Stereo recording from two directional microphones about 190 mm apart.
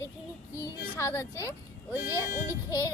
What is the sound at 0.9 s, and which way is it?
Speech, 10° left (ahead or behind).